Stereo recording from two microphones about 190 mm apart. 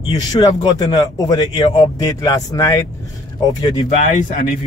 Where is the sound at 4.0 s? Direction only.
45° left (ahead or behind).